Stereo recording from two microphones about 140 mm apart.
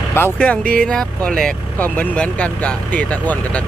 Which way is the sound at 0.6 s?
90° right.